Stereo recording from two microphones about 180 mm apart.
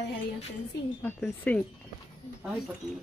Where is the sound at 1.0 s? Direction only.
5° left (ahead or behind).